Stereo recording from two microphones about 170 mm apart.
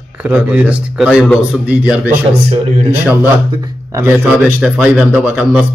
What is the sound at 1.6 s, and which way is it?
Speech, 10° right (ahead or behind).